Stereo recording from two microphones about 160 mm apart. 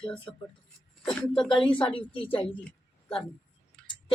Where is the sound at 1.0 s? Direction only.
5° left (ahead or behind).